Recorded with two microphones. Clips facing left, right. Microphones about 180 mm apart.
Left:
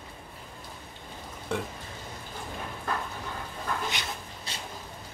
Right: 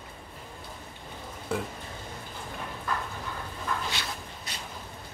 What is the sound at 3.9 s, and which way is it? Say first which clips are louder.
Dog: even; 20° left (ahead or behind).